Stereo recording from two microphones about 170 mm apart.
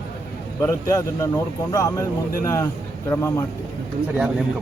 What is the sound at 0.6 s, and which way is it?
A man's voice, 15° left (ahead or behind).